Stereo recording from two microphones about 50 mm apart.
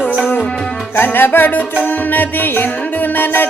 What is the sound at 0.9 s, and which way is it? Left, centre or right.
Music, left.